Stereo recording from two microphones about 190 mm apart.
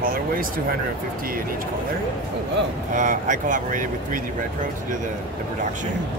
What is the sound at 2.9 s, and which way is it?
Speech, 40° right (ahead or behind).